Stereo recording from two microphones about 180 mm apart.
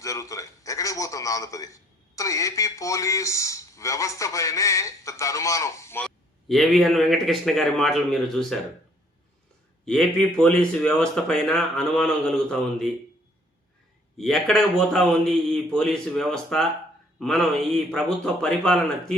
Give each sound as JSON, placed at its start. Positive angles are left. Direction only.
{"t": 0.0, "sound": "a sound", "side_deg": 20}
{"t": 2.1, "sound": "a man's voice", "side_deg": 20}
{"t": 6.5, "sound": "speech", "side_deg": 0}
{"t": 9.8, "sound": "speech", "side_deg": 5}
{"t": 14.2, "sound": "speech", "side_deg": 0}